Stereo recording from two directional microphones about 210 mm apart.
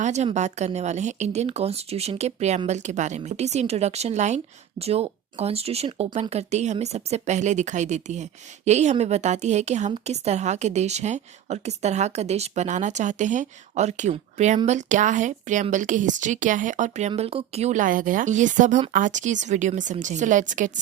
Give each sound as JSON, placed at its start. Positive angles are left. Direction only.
{"t": 0.0, "sound": "speech", "side_deg": -30}